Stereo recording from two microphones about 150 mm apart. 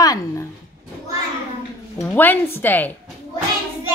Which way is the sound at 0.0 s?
25° left (ahead or behind).